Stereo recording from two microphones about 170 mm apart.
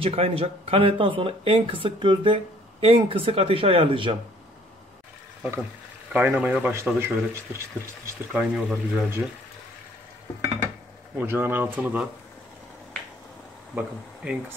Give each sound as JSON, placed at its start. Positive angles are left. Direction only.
{"t": 0.0, "sound": "speech", "side_deg": -35}
{"t": 6.1, "sound": "speech", "side_deg": -10}
{"t": 8.3, "sound": "speech", "side_deg": -5}
{"t": 11.1, "sound": "speech", "side_deg": -10}
{"t": 13.7, "sound": "speech", "side_deg": -10}